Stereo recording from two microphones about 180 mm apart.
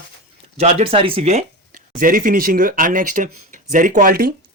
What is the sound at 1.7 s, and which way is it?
Speech, 50° right (ahead or behind).